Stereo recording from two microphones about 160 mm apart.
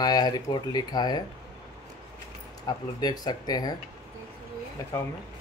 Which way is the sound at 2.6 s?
25° left (ahead or behind).